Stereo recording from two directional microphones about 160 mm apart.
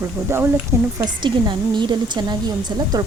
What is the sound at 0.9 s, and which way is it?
Speech, 30° right (ahead or behind).